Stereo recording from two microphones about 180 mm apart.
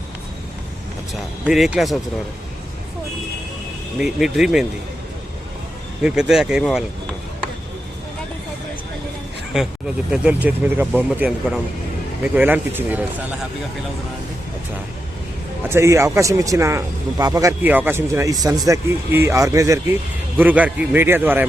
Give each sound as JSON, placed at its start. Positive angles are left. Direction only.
{"t": 1.5, "sound": "speech", "side_deg": -5}
{"t": 3.9, "sound": "speech", "side_deg": 0}
{"t": 6.0, "sound": "speech", "side_deg": -5}
{"t": 9.5, "sound": "speech", "side_deg": -5}
{"t": 15.7, "sound": "speech", "side_deg": -15}